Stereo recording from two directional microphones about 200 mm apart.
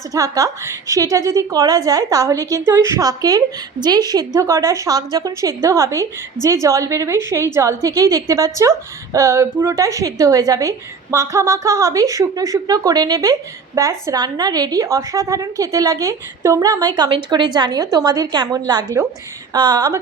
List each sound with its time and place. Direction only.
0.1 s a woman's voice: 15° right (ahead or behind)